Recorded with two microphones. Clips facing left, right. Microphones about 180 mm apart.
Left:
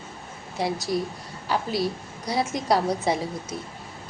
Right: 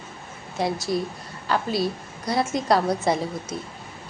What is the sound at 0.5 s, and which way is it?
A woman's voice, 10° left (ahead or behind).